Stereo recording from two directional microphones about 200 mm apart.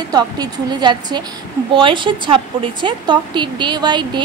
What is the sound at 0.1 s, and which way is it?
Speech, 20° right (ahead or behind).